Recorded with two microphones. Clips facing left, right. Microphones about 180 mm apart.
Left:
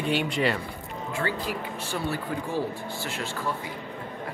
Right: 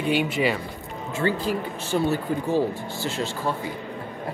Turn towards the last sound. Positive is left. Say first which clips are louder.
# right 5 dB
turn(degrees=-25)  # may be behind; listen again after turning